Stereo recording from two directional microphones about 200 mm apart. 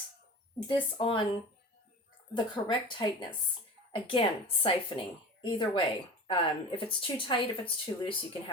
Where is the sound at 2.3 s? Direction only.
25° left (ahead or behind).